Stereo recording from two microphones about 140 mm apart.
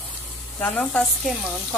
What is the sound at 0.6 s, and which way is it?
Sizzle, 5° left (ahead or behind).